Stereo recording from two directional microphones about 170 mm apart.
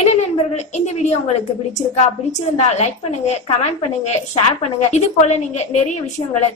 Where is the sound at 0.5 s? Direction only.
45° left (ahead or behind).